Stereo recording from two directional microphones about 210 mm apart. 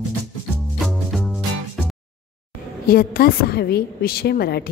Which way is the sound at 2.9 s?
45° left (ahead or behind).